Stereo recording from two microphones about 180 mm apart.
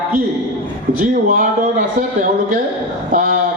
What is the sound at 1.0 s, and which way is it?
A man's voice, 45° right (ahead or behind).